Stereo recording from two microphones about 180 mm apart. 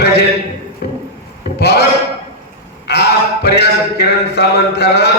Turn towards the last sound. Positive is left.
turn(degrees=65)  # may be behind; listen again after turning